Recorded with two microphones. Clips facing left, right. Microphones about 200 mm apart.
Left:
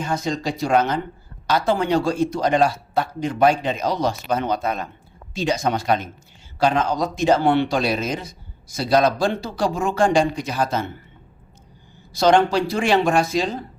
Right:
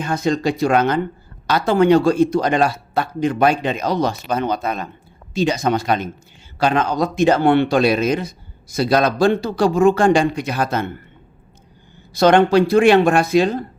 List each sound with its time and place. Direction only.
0.0 s speech: 60° right (ahead or behind); by 4.9 s 85° right
5.3 s speech: 65° right (ahead or behind)
12.1 s speech: 60° right (ahead or behind)